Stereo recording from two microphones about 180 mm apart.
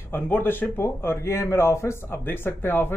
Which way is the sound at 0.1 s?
10° left (ahead or behind).